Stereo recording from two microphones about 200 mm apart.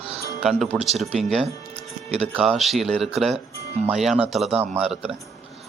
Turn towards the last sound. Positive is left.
turn(degrees=-5)  # may be behind; listen again after turning